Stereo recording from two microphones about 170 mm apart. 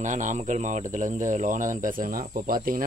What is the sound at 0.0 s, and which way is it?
Speech, 45° right (ahead or behind).